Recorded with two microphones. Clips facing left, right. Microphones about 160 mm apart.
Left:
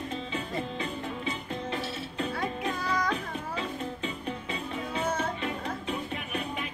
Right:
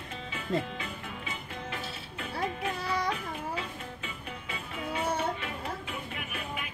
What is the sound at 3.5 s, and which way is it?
Music, 35° left (ahead or behind).